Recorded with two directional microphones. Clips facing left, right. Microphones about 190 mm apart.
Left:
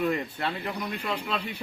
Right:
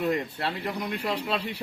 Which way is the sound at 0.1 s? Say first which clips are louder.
Right 1 dB; 30° right (ahead or behind).